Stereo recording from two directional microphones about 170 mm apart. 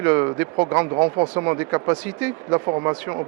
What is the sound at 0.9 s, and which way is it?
Speech, 25° right (ahead or behind).